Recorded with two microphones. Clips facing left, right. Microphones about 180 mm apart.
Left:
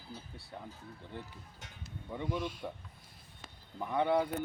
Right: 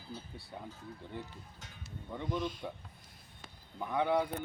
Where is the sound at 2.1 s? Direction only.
5° left (ahead or behind).